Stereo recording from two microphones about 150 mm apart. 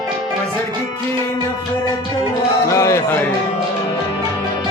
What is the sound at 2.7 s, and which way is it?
Run, 20° left (ahead or behind).